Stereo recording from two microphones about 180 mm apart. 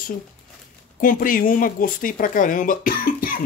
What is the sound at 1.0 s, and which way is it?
Speech, 50° left (ahead or behind).